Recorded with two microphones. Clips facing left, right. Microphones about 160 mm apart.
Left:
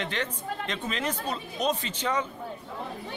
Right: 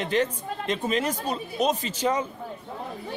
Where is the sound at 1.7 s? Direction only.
40° right (ahead or behind).